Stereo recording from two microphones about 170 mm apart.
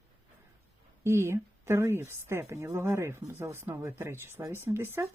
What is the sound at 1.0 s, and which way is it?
A woman's voice, 15° right (ahead or behind).